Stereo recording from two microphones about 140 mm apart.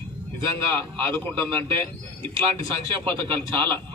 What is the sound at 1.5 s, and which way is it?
Speech, 40° right (ahead or behind).